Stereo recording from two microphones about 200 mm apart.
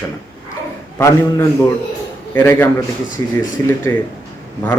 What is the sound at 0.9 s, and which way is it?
Speech, 15° left (ahead or behind).